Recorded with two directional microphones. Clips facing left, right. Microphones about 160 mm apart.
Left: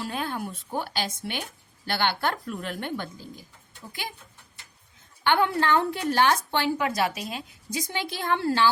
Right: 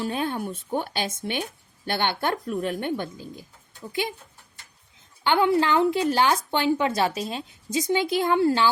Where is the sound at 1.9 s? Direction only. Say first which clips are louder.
Right 1 dB; 20° right (ahead or behind).